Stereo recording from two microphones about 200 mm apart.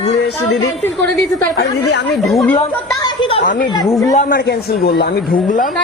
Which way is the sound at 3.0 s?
25° left (ahead or behind).